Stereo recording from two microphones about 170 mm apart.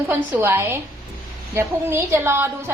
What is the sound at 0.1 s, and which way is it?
A woman's voice, 15° right (ahead or behind).